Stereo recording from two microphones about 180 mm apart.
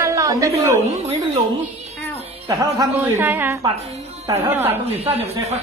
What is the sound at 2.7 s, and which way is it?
Speech, 15° right (ahead or behind).